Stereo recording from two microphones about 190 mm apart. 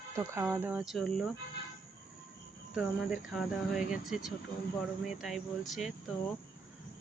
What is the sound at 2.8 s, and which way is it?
Speech, centre (ahead or behind).